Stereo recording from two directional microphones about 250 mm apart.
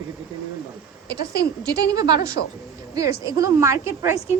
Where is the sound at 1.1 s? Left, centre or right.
Left.